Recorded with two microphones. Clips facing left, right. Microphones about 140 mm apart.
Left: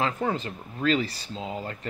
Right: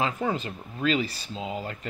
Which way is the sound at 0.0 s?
15° right (ahead or behind).